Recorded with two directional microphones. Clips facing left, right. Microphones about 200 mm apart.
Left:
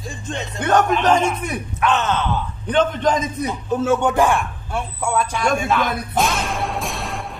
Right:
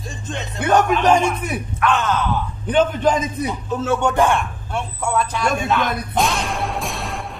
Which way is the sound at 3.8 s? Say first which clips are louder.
Left 1 dB; 10° left (ahead or behind).